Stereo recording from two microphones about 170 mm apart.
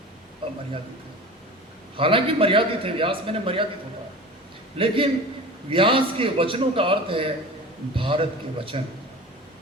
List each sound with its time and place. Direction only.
0.4 s a sound: 30° right (ahead or behind)
2.0 s a man's voice: 30° right (ahead or behind)
4.8 s a man's voice: 30° right (ahead or behind)